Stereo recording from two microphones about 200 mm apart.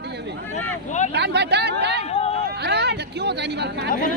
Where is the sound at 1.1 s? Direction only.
55° right (ahead or behind).